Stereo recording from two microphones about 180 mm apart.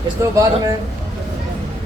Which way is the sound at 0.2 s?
20° right (ahead or behind).